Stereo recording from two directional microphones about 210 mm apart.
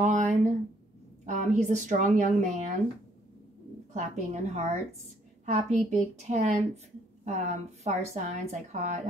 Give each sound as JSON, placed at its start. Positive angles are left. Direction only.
{"t": 0.0, "sound": "a sound", "side_deg": -35}
{"t": 1.2, "sound": "a woman's voice", "side_deg": -35}
{"t": 3.9, "sound": "a woman's voice", "side_deg": -35}